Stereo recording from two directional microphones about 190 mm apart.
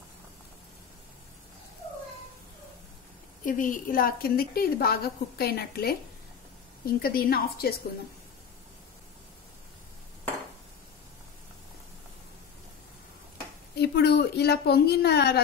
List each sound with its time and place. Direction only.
3.4 s a woman's voice: 45° left (ahead or behind)
7.0 s a woman's voice: 50° left (ahead or behind)
13.7 s a woman's voice: 60° left (ahead or behind)